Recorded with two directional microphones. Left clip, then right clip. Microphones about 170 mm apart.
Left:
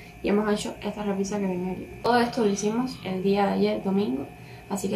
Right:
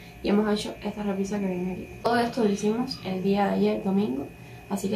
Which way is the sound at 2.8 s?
Centre (ahead or behind).